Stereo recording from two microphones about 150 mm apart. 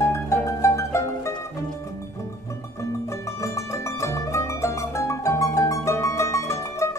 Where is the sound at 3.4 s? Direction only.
20° left (ahead or behind).